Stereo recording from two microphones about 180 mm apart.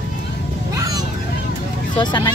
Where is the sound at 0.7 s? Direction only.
20° right (ahead or behind).